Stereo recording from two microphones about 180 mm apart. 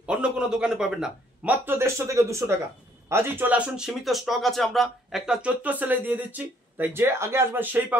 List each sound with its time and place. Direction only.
0.0 s speech: 5° right (ahead or behind)